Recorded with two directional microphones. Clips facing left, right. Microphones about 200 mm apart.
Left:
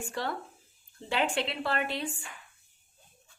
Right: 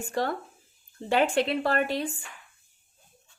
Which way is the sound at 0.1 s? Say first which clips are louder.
Right 8 dB; 45° right (ahead or behind).